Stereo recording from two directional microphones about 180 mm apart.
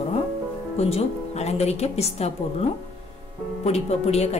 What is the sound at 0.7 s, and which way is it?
Speech, 35° left (ahead or behind).